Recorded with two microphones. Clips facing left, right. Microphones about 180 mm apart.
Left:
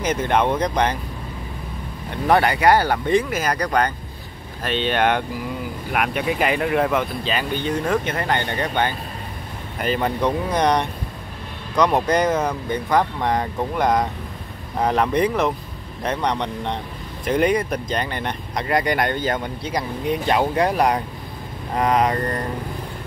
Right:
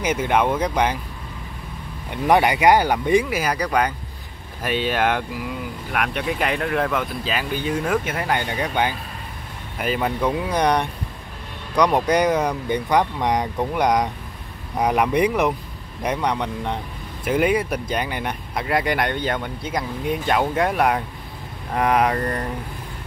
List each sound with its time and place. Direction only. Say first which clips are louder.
0.0 s speech: even; 10° right (ahead or behind)
2.2 s speech: right 1 dB; 15° right (ahead or behind)